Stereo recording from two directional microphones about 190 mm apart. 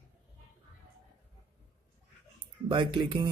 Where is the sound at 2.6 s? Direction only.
25° right (ahead or behind).